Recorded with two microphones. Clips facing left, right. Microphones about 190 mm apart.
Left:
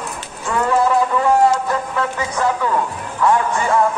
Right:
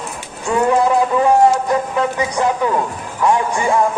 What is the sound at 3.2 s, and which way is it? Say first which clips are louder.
Music: right 1 dB; 15° right (ahead or behind).